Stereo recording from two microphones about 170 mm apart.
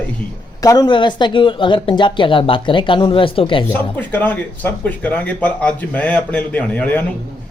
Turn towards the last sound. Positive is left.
turn(degrees=10)  # may be behind; listen again after turning